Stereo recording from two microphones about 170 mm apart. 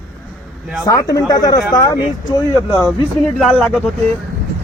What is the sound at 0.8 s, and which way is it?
Speech, 20° left (ahead or behind).